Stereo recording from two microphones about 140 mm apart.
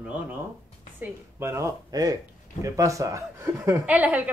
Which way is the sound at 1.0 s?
20° right (ahead or behind).